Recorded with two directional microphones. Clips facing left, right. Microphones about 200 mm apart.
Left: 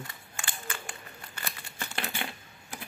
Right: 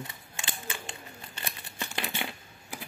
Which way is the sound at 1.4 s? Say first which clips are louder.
Right 1 dB; 20° right (ahead or behind).